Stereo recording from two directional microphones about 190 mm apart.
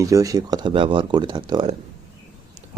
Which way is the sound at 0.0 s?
15° right (ahead or behind).